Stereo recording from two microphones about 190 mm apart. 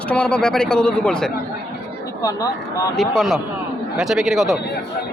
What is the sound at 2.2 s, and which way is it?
Speech, 20° left (ahead or behind).